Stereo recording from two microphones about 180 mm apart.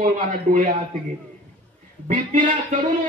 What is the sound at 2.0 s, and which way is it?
Speech, 45° right (ahead or behind).